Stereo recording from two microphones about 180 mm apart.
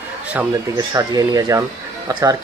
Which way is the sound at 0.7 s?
20° right (ahead or behind).